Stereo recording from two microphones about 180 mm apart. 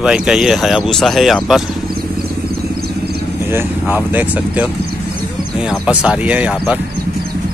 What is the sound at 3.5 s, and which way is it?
Speech, 10° right (ahead or behind).